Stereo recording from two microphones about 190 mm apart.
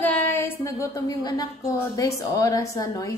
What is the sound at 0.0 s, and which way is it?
A woman's voice, 10° left (ahead or behind).